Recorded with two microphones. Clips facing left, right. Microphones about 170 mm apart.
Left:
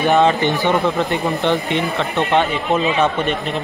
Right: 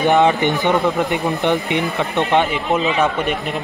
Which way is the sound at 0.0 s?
15° right (ahead or behind).